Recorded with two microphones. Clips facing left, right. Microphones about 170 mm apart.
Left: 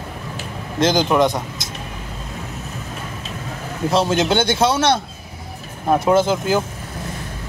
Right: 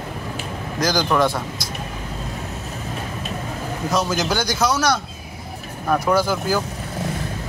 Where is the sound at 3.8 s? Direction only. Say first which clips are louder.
Left 5 dB; 25° left (ahead or behind).